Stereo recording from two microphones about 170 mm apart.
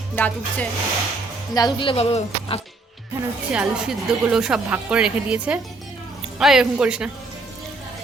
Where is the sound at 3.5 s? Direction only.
5° right (ahead or behind).